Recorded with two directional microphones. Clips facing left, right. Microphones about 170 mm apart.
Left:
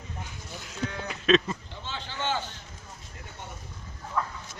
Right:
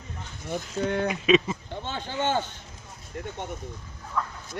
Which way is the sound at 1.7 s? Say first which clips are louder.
Right 6 dB; 50° right (ahead or behind).